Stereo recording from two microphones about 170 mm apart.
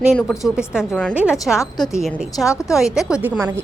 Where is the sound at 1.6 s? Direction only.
15° left (ahead or behind).